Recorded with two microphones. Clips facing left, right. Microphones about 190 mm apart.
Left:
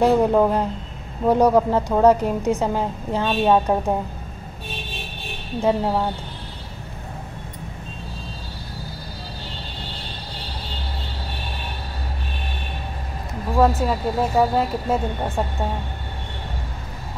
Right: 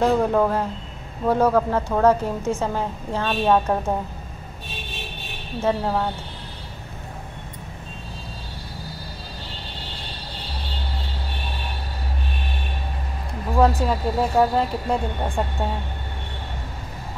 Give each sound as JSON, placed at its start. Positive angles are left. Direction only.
{"t": 0.0, "sound": "a woman's voice", "side_deg": 15}
{"t": 5.6, "sound": "a woman's voice", "side_deg": 15}
{"t": 13.6, "sound": "speech", "side_deg": 0}